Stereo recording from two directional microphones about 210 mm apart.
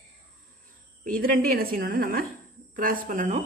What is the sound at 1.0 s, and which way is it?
A woman's voice, 40° right (ahead or behind).